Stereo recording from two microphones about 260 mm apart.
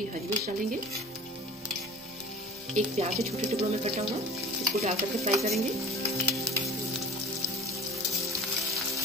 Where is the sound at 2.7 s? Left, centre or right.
Right.